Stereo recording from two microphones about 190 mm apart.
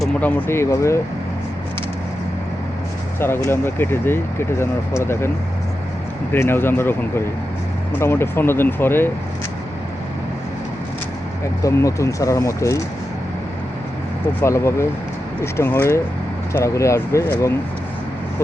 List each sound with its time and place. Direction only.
0.0 s speech: 10° left (ahead or behind)
3.2 s speech: 10° left (ahead or behind)
6.3 s speech: 10° left (ahead or behind)
7.9 s speech: 10° left (ahead or behind)
11.6 s speech: 15° left (ahead or behind)
14.4 s speech: 15° left (ahead or behind)